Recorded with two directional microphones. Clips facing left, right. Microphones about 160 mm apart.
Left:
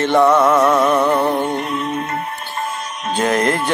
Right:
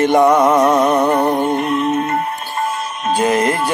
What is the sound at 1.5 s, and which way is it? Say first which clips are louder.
Music: right 5 dB; centre (ahead or behind).